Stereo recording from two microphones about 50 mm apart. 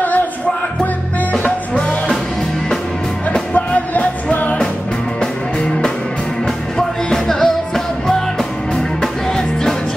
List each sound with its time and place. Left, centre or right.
1.7 s music: left
3.5 s music: left
6.4 s music: centre